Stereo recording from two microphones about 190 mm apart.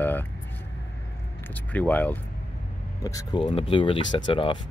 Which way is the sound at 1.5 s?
10° left (ahead or behind).